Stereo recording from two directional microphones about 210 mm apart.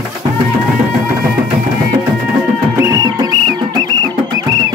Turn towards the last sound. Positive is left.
turn(degrees=-15)  # may be behind; listen again after turning